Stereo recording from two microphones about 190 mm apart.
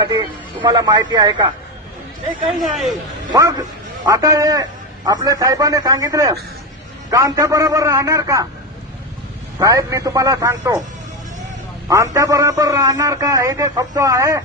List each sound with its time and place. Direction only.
0.0 s speech: 20° right (ahead or behind)
3.2 s a man's voice: 20° right (ahead or behind)
9.6 s a man's voice: 15° right (ahead or behind)
11.9 s a man's voice: 15° right (ahead or behind)